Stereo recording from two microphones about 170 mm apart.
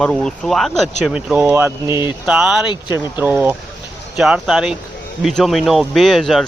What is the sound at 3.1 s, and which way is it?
Speech, 10° right (ahead or behind).